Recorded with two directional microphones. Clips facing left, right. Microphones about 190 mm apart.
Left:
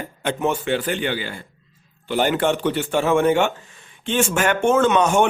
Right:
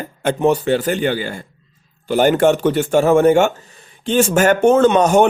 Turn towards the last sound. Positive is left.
turn(degrees=-40)  # may be behind; listen again after turning